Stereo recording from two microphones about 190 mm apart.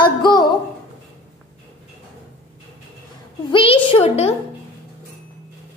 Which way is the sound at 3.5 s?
30° left (ahead or behind).